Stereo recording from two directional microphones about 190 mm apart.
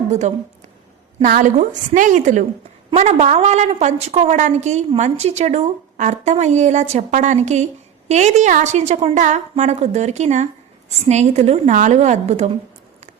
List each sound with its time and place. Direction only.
0.1 s a woman's voice: 35° right (ahead or behind)